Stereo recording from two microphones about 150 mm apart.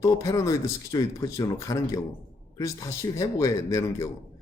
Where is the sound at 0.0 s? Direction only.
20° left (ahead or behind).